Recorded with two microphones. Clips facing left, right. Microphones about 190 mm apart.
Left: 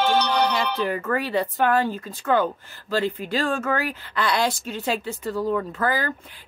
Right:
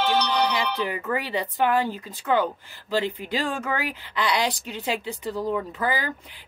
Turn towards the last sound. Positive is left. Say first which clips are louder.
# left 2 dB
turn(degrees=-15)  # may be behind; listen again after turning